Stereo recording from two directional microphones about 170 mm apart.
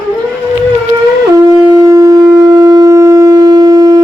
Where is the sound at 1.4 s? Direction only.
20° right (ahead or behind).